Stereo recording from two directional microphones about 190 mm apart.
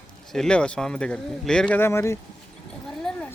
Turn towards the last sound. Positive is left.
turn(degrees=5)  # may be behind; listen again after turning